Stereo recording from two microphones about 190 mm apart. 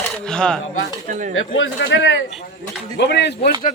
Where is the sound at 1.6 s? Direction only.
75° left (ahead or behind).